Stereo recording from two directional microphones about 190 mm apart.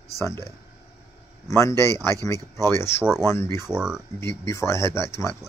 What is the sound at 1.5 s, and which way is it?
Speech, 15° left (ahead or behind).